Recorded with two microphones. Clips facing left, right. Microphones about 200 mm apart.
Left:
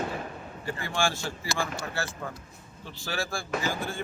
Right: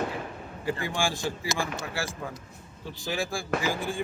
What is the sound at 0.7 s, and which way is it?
Speech, 15° right (ahead or behind).